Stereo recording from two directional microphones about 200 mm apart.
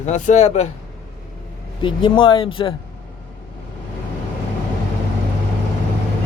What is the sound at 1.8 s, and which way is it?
Speech, 25° left (ahead or behind).